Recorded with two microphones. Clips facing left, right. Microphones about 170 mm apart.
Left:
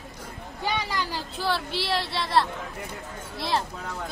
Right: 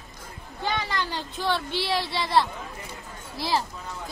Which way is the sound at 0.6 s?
10° left (ahead or behind).